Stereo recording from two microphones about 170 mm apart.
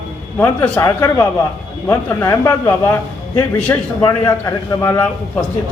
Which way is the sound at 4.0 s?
15° left (ahead or behind).